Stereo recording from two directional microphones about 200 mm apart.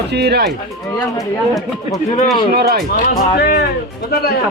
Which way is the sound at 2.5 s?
50° right (ahead or behind).